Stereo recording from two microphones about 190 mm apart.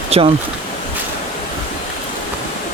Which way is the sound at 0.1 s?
30° right (ahead or behind).